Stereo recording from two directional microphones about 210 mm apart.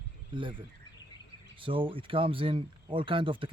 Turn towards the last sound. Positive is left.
turn(degrees=-25)  # may be behind; listen again after turning